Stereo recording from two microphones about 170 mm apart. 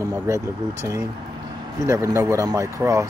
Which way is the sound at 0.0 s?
20° right (ahead or behind).